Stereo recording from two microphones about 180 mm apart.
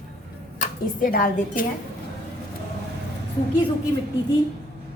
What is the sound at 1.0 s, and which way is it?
Speech, 50° left (ahead or behind).